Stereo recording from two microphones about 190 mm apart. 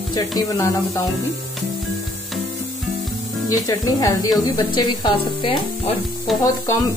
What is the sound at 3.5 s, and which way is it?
A woman's voice, 20° left (ahead or behind).